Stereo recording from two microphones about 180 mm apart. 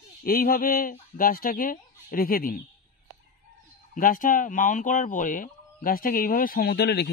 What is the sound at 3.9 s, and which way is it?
Speech, 50° left (ahead or behind).